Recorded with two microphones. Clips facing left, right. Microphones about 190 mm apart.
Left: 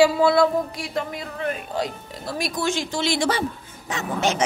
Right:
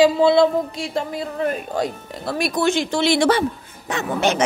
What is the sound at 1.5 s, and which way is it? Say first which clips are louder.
A woman's voice: right 4 dB; 55° right (ahead or behind).